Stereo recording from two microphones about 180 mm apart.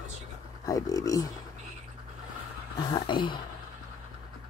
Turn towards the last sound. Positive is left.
turn(degrees=25)  # may be behind; listen again after turning